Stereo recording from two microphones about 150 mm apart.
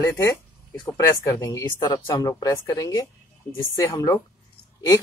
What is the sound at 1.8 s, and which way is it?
Speech, 30° left (ahead or behind).